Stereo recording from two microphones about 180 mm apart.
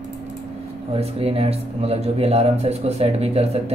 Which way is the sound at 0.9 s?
35° right (ahead or behind).